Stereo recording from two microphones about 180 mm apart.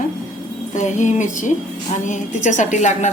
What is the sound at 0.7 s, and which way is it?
A woman's voice, 45° left (ahead or behind).